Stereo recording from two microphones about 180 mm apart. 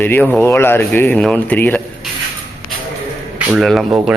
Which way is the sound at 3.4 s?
Centre (ahead or behind).